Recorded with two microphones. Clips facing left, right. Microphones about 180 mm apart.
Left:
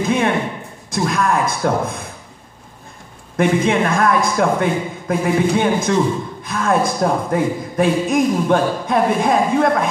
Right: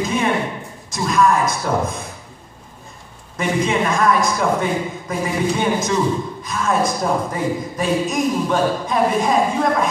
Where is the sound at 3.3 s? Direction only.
55° left (ahead or behind).